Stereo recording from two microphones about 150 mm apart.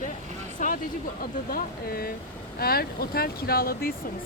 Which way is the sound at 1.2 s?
75° left (ahead or behind).